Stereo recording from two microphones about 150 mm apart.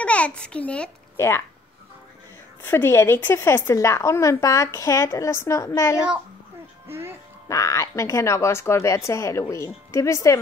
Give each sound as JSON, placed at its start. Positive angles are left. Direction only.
{"t": 0.0, "sound": "a child's voice", "side_deg": 10}
{"t": 2.6, "sound": "speech", "side_deg": 15}
{"t": 6.9, "sound": "speech", "side_deg": -15}
{"t": 7.4, "sound": "speech", "side_deg": 20}